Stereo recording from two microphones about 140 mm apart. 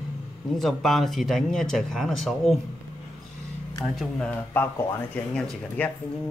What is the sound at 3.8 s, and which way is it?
Speech, centre (ahead or behind).